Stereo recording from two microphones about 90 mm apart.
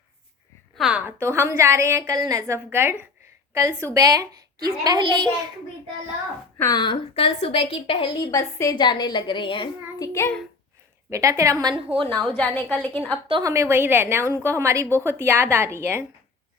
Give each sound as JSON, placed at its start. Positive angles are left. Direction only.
{"t": 0.8, "sound": "a sound", "side_deg": -5}
{"t": 1.0, "sound": "a woman's voice", "side_deg": -30}
{"t": 2.6, "sound": "a woman's voice", "side_deg": -25}
{"t": 6.7, "sound": "a woman's voice", "side_deg": 60}
{"t": 8.3, "sound": "a woman's voice", "side_deg": 35}
{"t": 8.7, "sound": "a woman's voice", "side_deg": 55}
{"t": 10.0, "sound": "a woman's voice", "side_deg": 35}
{"t": 11.1, "sound": "a woman's voice", "side_deg": -35}
{"t": 11.7, "sound": "a woman's voice", "side_deg": -80}
{"t": 12.1, "sound": "a woman's voice", "side_deg": 15}
{"t": 13.4, "sound": "a woman's voice", "side_deg": -30}